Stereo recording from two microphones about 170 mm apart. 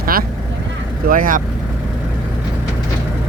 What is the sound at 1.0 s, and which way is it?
Speech, 55° right (ahead or behind).